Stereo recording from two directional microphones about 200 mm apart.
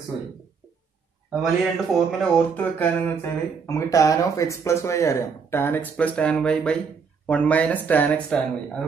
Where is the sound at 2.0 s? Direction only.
Centre (ahead or behind).